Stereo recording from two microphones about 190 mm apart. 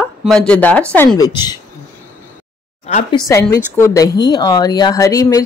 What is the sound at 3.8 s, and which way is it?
Speech, 15° left (ahead or behind).